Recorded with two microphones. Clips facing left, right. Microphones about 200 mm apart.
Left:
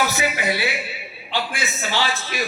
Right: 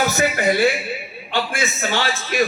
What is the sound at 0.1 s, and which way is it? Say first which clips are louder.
A man's voice: right 5 dB; 45° right (ahead or behind).